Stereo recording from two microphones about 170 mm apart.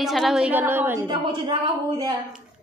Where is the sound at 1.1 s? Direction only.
30° right (ahead or behind).